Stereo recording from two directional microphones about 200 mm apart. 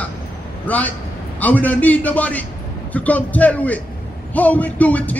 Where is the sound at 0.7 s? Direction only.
10° left (ahead or behind).